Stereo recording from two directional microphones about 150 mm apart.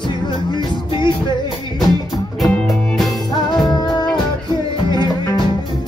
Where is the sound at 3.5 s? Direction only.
25° left (ahead or behind).